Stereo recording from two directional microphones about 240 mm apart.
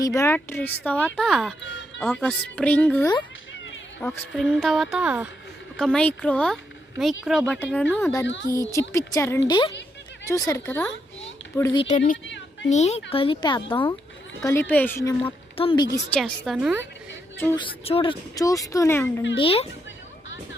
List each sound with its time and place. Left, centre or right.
0.0 s speech: centre
4.0 s a woman's voice: centre
14.4 s speech: centre
15.2 s speech: left
16.1 s a woman's voice: centre
17.4 s speech: centre
17.8 s speech: left
19.4 s speech: left